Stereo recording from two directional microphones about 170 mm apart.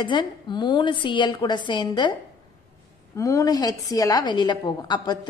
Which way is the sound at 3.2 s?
20° left (ahead or behind).